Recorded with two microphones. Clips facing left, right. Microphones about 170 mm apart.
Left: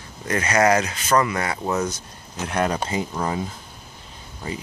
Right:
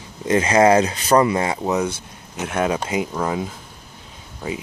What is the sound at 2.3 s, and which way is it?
Speech, 5° right (ahead or behind).